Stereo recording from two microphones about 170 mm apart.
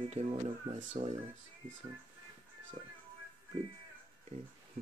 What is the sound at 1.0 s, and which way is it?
Speech, 45° right (ahead or behind).